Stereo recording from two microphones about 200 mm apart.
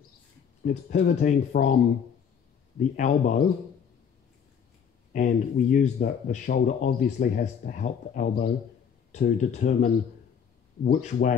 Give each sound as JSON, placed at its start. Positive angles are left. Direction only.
{"t": 0.8, "sound": "speech", "side_deg": 40}
{"t": 3.0, "sound": "speech", "side_deg": 35}
{"t": 5.1, "sound": "speech", "side_deg": 40}